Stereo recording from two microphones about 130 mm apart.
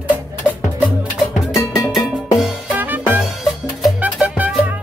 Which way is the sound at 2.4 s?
15° right (ahead or behind).